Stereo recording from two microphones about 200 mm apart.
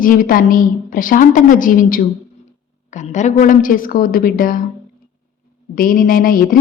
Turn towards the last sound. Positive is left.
turn(degrees=45)  # may be behind; listen again after turning